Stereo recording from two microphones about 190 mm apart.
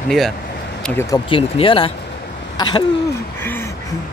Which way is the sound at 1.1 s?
25° left (ahead or behind).